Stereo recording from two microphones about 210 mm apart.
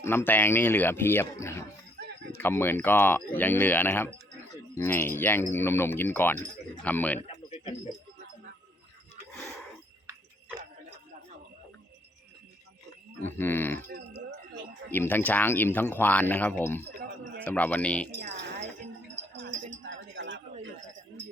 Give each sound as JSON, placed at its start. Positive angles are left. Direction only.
{"t": 0.0, "sound": "speech", "side_deg": 10}
{"t": 7.2, "sound": "a sound", "side_deg": 30}
{"t": 13.2, "sound": "speech", "side_deg": 10}
{"t": 13.8, "sound": "music", "side_deg": -55}
{"t": 14.8, "sound": "speech", "side_deg": 10}
{"t": 18.1, "sound": "wind chime", "side_deg": -50}
{"t": 19.1, "sound": "a sound", "side_deg": -60}